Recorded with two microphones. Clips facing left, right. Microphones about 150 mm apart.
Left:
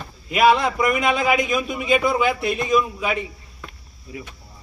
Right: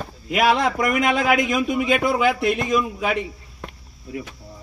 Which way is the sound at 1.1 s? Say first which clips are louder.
Even; 70° right (ahead or behind).